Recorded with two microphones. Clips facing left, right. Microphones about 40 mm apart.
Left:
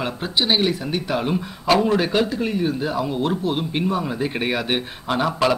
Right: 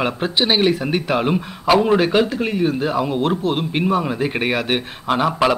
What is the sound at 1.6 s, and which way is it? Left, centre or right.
Speech, centre.